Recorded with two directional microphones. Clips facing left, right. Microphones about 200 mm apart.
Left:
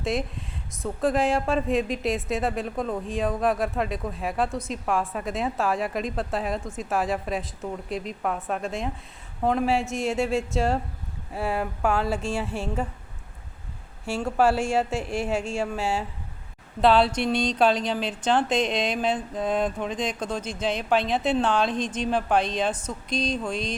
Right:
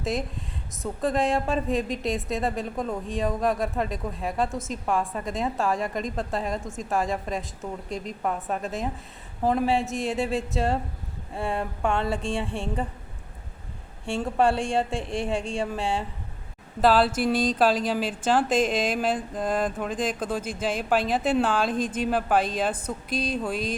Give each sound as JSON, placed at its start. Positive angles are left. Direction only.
{"t": 0.0, "sound": "speech", "side_deg": 0}
{"t": 14.0, "sound": "speech", "side_deg": 0}